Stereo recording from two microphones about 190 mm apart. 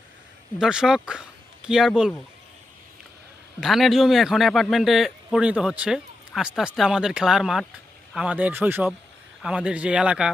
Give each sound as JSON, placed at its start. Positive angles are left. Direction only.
{"t": 0.6, "sound": "a man's voice", "side_deg": -5}
{"t": 3.6, "sound": "a man's voice", "side_deg": 0}